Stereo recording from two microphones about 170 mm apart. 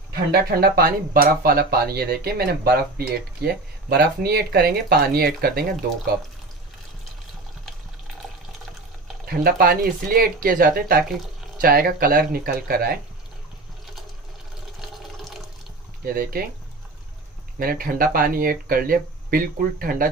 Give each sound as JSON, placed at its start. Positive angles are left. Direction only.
{"t": 0.3, "sound": "speech", "side_deg": -60}
{"t": 9.3, "sound": "speech", "side_deg": -60}
{"t": 14.8, "sound": "water", "side_deg": 0}
{"t": 16.1, "sound": "speech", "side_deg": -60}
{"t": 17.6, "sound": "speech", "side_deg": -60}